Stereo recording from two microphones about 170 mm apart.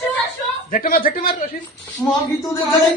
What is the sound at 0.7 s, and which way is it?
Speech, 60° left (ahead or behind).